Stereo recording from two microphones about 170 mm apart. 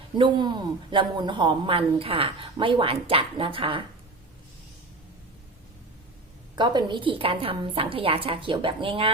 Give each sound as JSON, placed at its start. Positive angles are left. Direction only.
{"t": 0.2, "sound": "speech", "side_deg": -25}
{"t": 6.6, "sound": "a woman's voice", "side_deg": -25}